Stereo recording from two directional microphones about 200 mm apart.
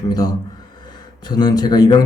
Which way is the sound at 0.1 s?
20° left (ahead or behind).